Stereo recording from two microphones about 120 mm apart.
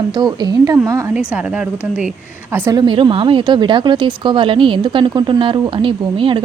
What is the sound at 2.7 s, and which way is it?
Speech, 40° right (ahead or behind).